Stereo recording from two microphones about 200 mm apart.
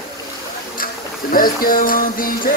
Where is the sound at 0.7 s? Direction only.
45° left (ahead or behind).